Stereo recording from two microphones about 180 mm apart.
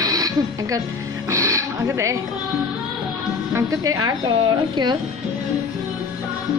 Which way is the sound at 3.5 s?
20° right (ahead or behind).